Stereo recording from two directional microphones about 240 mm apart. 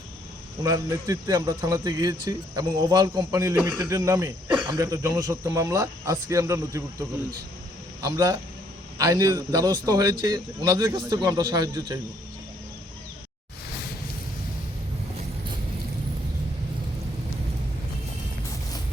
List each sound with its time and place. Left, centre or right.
0.6 s a man's voice: centre
8.0 s a man's voice: centre